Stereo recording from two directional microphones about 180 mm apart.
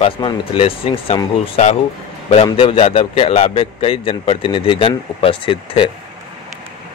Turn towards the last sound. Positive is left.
turn(degrees=30)  # may be behind; listen again after turning